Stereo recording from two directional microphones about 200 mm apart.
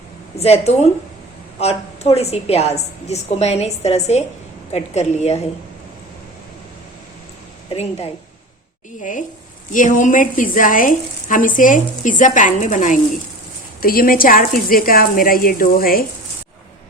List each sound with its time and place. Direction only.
0.3 s a woman's voice: 30° left (ahead or behind)
7.7 s a woman's voice: 30° left (ahead or behind); by 16.0 s 45° left (ahead or behind)